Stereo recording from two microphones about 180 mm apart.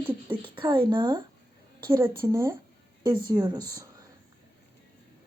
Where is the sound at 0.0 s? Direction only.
10° right (ahead or behind).